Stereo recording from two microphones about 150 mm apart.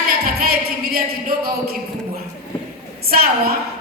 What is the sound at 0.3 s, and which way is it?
Music, 90° right.